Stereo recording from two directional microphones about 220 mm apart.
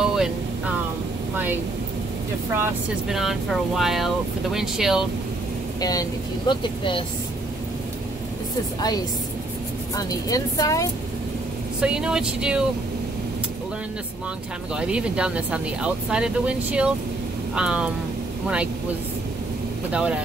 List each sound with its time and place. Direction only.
0.0 s vehicle: 5° right (ahead or behind)
1.3 s speech: 10° right (ahead or behind)
5.8 s speech: 15° left (ahead or behind)
9.9 s speech: 15° left (ahead or behind)
11.8 s speech: 5° right (ahead or behind)
14.8 s speech: 5° right (ahead or behind)
19.9 s speech: 5° right (ahead or behind)